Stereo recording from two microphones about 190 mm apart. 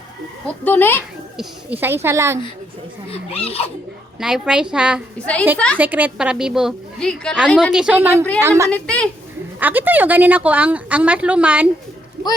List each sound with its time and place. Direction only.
0.6 s a child's voice: 10° left (ahead or behind)
1.4 s a woman's voice: 10° right (ahead or behind)
3.1 s speech: 30° left (ahead or behind)
4.2 s a woman's voice: 5° right (ahead or behind)
5.2 s a child's voice: 5° left (ahead or behind)
5.7 s a woman's voice: 10° right (ahead or behind)
8.7 s a child's voice: 5° left (ahead or behind)
9.6 s a woman's voice: 10° right (ahead or behind)
12.2 s a sound: 60° right (ahead or behind)